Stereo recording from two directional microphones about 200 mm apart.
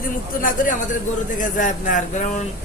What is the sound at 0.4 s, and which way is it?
Speech, 40° left (ahead or behind).